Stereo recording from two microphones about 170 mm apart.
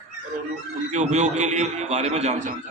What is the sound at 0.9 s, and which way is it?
A man's voice, 45° right (ahead or behind).